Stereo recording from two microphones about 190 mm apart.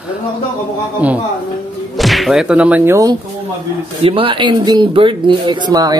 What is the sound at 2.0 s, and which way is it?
Thump, centre (ahead or behind).